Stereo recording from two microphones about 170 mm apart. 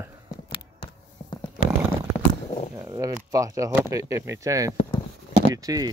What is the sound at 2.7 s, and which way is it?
Speech, 20° right (ahead or behind).